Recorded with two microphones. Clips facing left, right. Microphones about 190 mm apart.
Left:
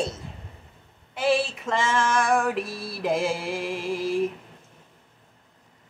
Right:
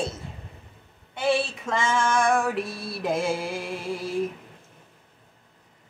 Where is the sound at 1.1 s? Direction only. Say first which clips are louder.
Left 1 dB; centre (ahead or behind).